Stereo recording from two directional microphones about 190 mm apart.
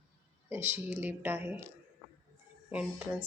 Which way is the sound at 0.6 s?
10° right (ahead or behind).